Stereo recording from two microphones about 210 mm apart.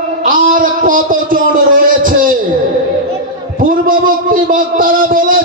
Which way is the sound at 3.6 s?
40° right (ahead or behind).